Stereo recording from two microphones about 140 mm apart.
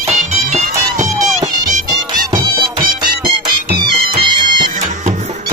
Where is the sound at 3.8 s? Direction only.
90° right.